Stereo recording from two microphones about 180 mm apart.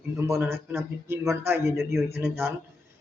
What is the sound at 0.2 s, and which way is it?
A man's voice, 15° right (ahead or behind).